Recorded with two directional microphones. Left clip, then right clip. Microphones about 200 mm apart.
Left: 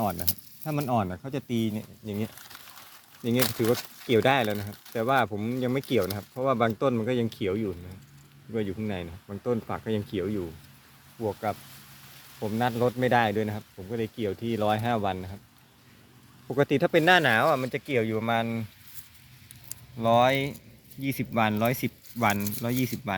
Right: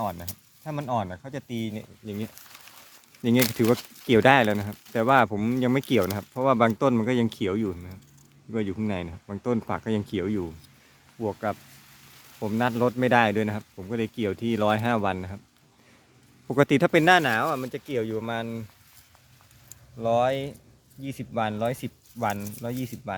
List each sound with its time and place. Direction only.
0.0 s speech: centre (ahead or behind)
3.6 s speech: 35° right (ahead or behind)
16.5 s speech: 45° right (ahead or behind)
17.2 s speech: 5° right (ahead or behind)
20.0 s speech: centre (ahead or behind)